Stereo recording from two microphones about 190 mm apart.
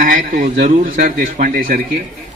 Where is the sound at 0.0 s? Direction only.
45° right (ahead or behind).